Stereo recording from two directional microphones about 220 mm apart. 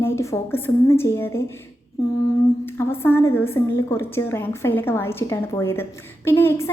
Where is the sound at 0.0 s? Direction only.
10° left (ahead or behind).